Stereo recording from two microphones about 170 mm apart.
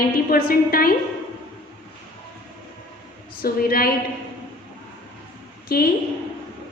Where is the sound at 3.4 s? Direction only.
60° left (ahead or behind).